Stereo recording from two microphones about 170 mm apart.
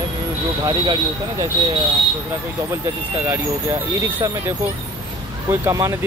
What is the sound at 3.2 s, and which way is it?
Speech, 15° right (ahead or behind).